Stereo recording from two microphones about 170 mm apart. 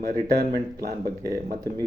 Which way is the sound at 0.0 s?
65° right (ahead or behind).